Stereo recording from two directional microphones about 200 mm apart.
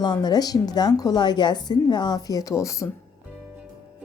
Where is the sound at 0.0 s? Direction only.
20° left (ahead or behind).